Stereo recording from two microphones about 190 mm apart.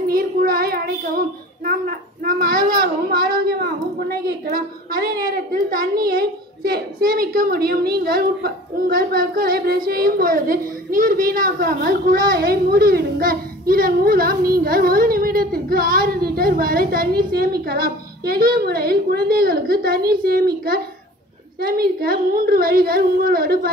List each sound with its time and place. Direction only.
0.1 s child singing: 50° right (ahead or behind)
6.0 s a woman's voice: 55° right (ahead or behind)